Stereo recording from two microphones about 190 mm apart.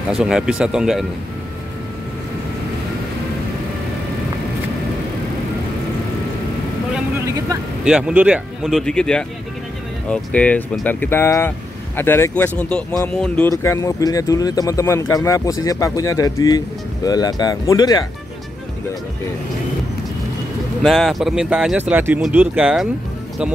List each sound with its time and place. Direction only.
0.1 s speech: 5° right (ahead or behind)
7.8 s speech: 5° right (ahead or behind); by 18.0 s 20° left (ahead or behind)
20.8 s speech: centre (ahead or behind)